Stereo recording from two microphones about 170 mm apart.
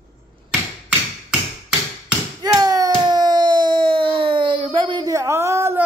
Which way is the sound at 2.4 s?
20° right (ahead or behind).